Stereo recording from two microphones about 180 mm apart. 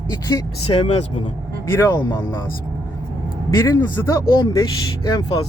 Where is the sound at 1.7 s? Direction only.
20° left (ahead or behind).